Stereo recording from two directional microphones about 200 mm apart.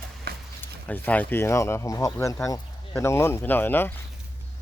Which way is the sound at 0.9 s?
10° left (ahead or behind).